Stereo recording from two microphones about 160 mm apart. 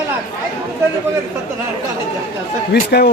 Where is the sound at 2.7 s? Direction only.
80° left.